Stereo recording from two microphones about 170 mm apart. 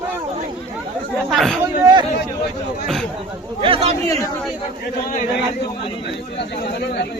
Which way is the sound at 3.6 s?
30° right (ahead or behind).